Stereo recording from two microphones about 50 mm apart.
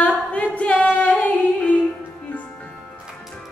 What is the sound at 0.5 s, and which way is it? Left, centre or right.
A capella, left.